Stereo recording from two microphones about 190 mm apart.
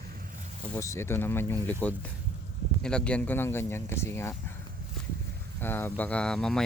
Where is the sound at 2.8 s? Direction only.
5° left (ahead or behind).